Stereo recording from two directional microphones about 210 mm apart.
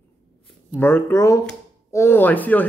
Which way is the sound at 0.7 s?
10° left (ahead or behind).